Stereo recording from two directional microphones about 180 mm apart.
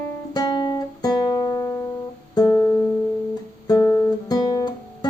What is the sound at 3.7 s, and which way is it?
Guitar, 20° left (ahead or behind).